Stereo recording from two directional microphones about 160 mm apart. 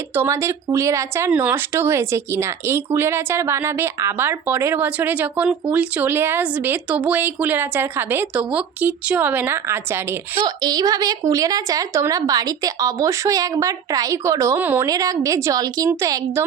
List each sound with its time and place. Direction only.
0.1 s speech: 15° right (ahead or behind)